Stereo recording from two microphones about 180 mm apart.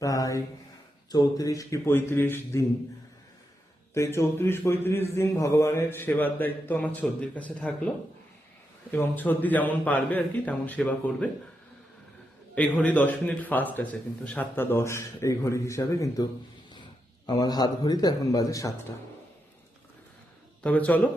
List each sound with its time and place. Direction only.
0.0 s a sound: 20° left (ahead or behind)
1.1 s a man's voice: 20° left (ahead or behind)
3.9 s a man's voice: 15° left (ahead or behind)
8.9 s a man's voice: 10° left (ahead or behind)
12.5 s a man's voice: 5° left (ahead or behind)
17.2 s a man's voice: 25° left (ahead or behind)
20.7 s a man's voice: 10° left (ahead or behind)